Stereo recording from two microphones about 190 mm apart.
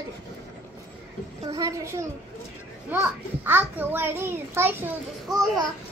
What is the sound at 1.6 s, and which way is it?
A child's voice, 15° right (ahead or behind).